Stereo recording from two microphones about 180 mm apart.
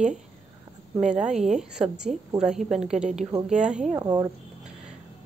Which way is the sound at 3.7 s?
40° right (ahead or behind).